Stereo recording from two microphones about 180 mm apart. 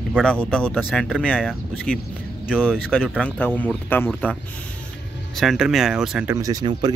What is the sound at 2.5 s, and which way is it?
Speech, 5° right (ahead or behind).